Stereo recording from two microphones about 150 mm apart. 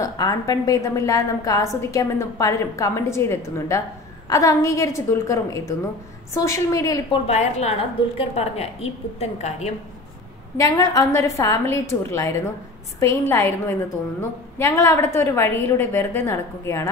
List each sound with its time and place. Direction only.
0.0 s a woman's voice: 25° left (ahead or behind)
7.2 s a woman's voice: 45° left (ahead or behind)
10.6 s a woman's voice: 25° left (ahead or behind)